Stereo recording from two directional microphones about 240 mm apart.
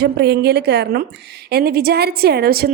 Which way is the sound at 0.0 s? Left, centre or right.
Right.